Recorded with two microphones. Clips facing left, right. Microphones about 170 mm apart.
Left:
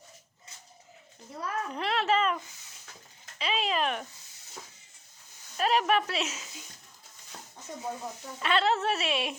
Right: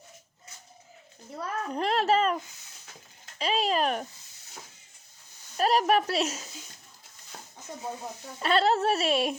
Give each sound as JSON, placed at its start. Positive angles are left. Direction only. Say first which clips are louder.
{"t": 1.4, "sound": "a child's voice", "louder": "right 3 dB", "side_deg": -45}
{"t": 5.5, "sound": "a child's voice", "louder": "right 2 dB", "side_deg": -40}
{"t": 8.4, "sound": "a child's voice", "louder": "right 3 dB", "side_deg": -40}